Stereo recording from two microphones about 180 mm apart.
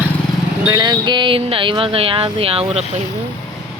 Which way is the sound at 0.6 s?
20° right (ahead or behind).